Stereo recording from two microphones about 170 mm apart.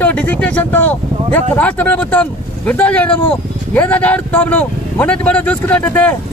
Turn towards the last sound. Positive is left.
turn(degrees=10)  # may be behind; listen again after turning